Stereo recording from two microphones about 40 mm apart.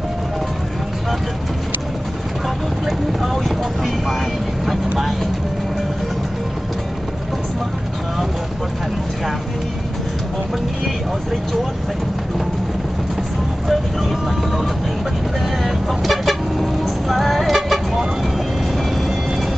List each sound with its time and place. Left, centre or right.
3.1 s vehicle: centre
15.6 s vehicle: centre